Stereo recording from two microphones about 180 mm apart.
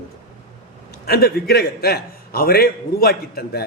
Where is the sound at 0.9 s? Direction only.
60° left (ahead or behind).